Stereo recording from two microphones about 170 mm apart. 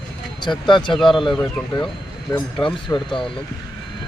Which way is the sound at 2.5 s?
30° left (ahead or behind).